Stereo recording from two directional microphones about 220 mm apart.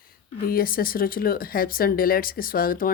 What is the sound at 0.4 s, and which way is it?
Speech, 40° left (ahead or behind).